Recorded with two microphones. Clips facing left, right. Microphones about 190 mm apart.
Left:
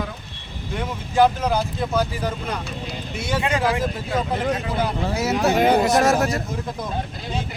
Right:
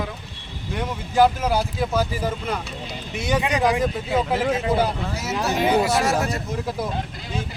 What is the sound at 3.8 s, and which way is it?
Speech, centre (ahead or behind).